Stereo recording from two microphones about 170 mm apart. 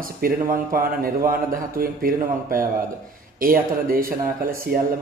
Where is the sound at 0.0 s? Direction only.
55° right (ahead or behind).